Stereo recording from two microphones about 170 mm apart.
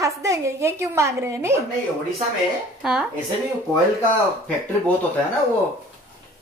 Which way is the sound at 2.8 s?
5° right (ahead or behind).